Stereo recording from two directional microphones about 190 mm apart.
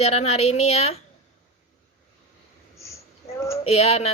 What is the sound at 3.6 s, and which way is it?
Speech, 30° left (ahead or behind).